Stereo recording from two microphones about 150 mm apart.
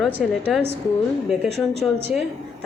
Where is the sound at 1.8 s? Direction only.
Centre (ahead or behind).